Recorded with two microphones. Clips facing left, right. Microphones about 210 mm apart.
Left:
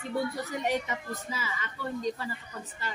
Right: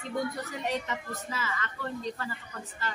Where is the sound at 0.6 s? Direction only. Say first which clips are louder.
Left 1 dB; 15° left (ahead or behind).